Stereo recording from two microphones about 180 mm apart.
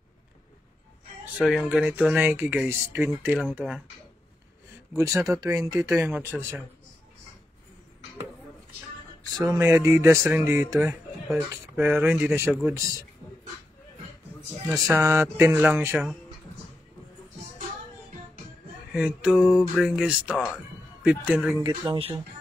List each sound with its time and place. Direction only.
1.4 s speech: centre (ahead or behind)
4.9 s speech: 15° right (ahead or behind)
9.4 s speech: 15° right (ahead or behind)
14.7 s speech: centre (ahead or behind)
15.0 s speech: 15° right (ahead or behind)
18.9 s speech: 5° right (ahead or behind)
21.6 s speech: 25° right (ahead or behind)